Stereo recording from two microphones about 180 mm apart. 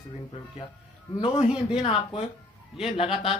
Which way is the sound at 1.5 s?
5° right (ahead or behind).